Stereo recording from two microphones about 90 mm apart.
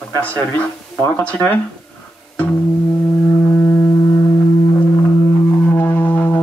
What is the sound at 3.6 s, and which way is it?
Music, 30° left (ahead or behind).